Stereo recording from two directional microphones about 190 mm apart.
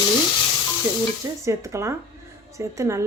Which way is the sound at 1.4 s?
15° right (ahead or behind).